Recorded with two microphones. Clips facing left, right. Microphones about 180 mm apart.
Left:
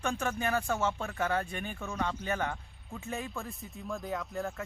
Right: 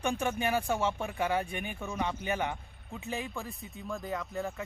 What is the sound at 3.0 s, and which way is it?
Speech, centre (ahead or behind).